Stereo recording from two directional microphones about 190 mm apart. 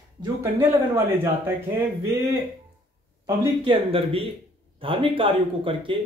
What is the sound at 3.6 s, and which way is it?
Speech, 30° right (ahead or behind).